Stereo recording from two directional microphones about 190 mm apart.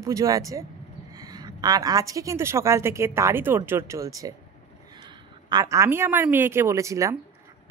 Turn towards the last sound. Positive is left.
turn(degrees=-15)  # may be behind; listen again after turning